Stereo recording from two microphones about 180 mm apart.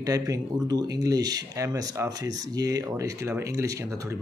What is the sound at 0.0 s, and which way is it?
Speech, 20° right (ahead or behind).